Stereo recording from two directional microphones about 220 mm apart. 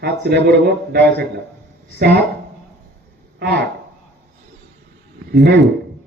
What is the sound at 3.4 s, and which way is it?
Speech, 50° right (ahead or behind).